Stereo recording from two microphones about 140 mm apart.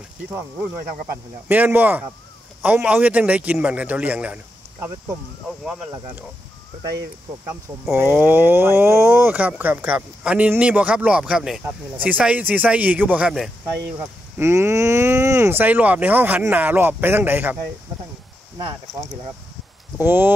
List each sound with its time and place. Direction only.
1.1 s speech: 15° right (ahead or behind)
5.7 s speech: 5° right (ahead or behind)
7.9 s speech: 15° right (ahead or behind)
13.9 s speech: 15° right (ahead or behind)
20.0 s speech: 15° right (ahead or behind)